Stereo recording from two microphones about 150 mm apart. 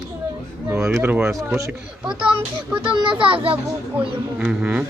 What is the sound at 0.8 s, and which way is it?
Speech, 10° right (ahead or behind).